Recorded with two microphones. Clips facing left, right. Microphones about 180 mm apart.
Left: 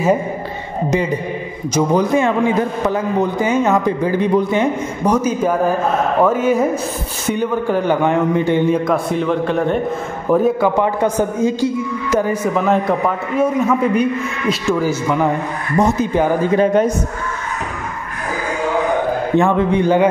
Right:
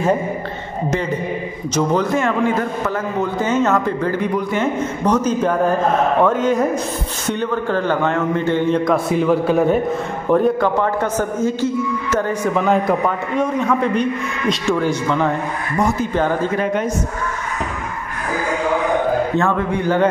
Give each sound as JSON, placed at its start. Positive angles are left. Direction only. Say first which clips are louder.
{"t": 1.7, "sound": "a man's voice", "louder": "left 3 dB", "side_deg": 10}
{"t": 10.8, "sound": "a man's voice", "louder": "left 3 dB", "side_deg": 15}
{"t": 16.5, "sound": "a man's voice", "louder": "left 6 dB", "side_deg": 35}
{"t": 19.3, "sound": "a man's voice", "louder": "left 4 dB", "side_deg": 20}